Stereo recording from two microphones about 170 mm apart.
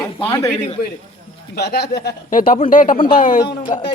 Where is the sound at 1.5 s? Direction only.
75° left (ahead or behind).